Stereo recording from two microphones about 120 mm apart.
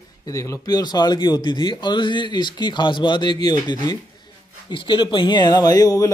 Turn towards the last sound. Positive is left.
turn(degrees=30)  # may be behind; listen again after turning